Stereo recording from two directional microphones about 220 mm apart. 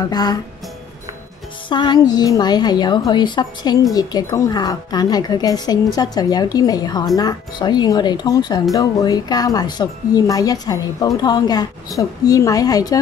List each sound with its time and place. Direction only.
0.1 s speech: 20° left (ahead or behind)
1.7 s a woman's voice: 20° left (ahead or behind)